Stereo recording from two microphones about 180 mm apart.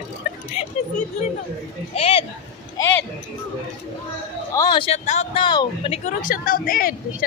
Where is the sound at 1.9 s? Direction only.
35° left (ahead or behind).